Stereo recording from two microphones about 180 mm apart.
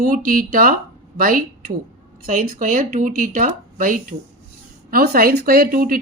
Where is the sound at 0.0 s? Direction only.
50° right (ahead or behind).